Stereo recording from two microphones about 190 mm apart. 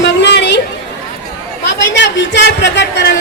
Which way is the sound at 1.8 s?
70° left (ahead or behind).